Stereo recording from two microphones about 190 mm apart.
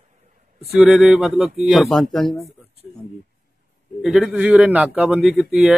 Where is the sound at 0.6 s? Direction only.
5° right (ahead or behind).